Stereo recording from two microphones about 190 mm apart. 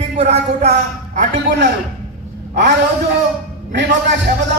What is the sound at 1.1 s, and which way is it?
Speech, 60° right (ahead or behind).